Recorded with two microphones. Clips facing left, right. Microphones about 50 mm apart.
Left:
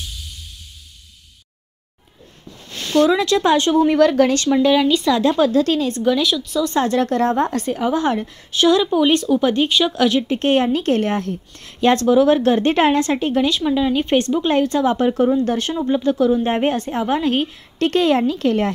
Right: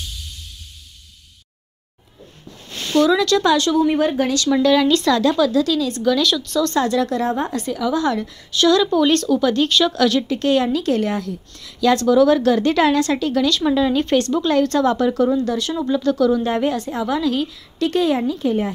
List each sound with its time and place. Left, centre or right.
3.0 s speech: left
3.8 s a woman's voice: left
4.5 s speech: centre
5.1 s speech: left
5.4 s a woman's voice: left
6.2 s speech: centre
6.7 s a woman's voice: left
10.2 s a woman's voice: left
12.1 s a woman's voice: left
13.6 s speech: centre
15.0 s a woman's voice: left
15.9 s speech: left
16.4 s a woman's voice: left